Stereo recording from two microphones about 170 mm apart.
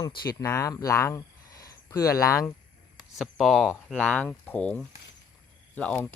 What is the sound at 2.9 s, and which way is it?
Speech, centre (ahead or behind).